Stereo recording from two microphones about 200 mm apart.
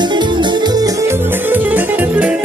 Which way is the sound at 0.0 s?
20° right (ahead or behind).